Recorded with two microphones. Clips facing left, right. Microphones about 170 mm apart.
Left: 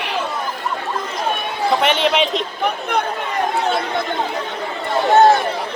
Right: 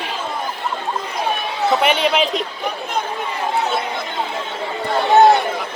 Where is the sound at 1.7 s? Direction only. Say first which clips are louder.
Even; 5° right (ahead or behind).